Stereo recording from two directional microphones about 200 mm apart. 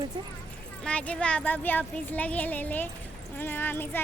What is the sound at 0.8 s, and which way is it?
Speech, 5° left (ahead or behind).